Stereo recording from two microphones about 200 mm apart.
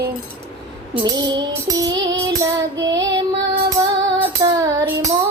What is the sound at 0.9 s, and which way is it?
Music, 20° right (ahead or behind).